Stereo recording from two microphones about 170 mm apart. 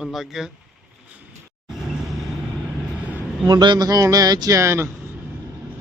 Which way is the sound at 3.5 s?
25° right (ahead or behind).